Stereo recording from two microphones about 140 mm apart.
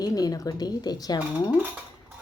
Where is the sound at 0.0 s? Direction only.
25° left (ahead or behind).